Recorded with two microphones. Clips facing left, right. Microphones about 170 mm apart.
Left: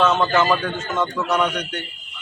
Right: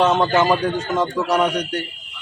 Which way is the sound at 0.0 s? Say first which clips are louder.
Right 2 dB; 15° right (ahead or behind).